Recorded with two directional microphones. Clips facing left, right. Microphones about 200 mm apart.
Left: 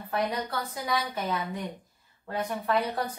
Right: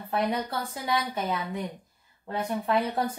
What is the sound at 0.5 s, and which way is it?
Speech, 30° right (ahead or behind).